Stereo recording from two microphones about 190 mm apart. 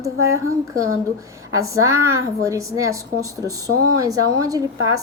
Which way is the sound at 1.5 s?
15° right (ahead or behind).